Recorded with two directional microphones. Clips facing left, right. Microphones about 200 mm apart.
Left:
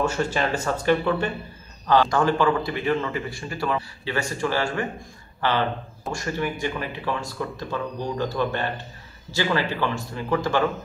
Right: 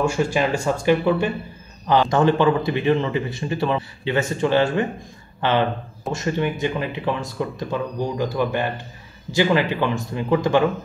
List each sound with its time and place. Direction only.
0.0 s speech: 10° right (ahead or behind)